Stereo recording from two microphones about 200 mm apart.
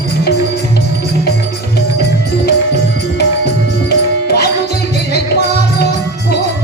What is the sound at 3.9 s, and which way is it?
Music, 55° left (ahead or behind).